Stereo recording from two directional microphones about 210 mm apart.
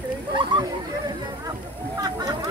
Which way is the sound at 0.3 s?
20° right (ahead or behind).